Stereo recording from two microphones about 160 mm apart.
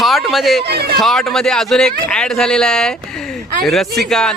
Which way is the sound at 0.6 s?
90° right.